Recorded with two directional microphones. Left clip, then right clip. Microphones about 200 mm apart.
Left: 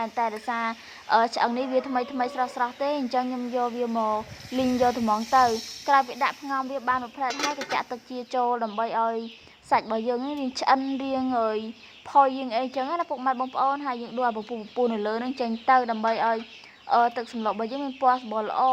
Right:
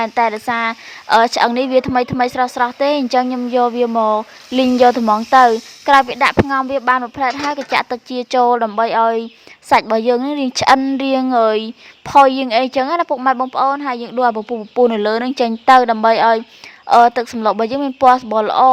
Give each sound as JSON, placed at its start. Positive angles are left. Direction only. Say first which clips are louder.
{"t": 0.0, "sound": "a woman's voice", "louder": "right 11 dB", "side_deg": -40}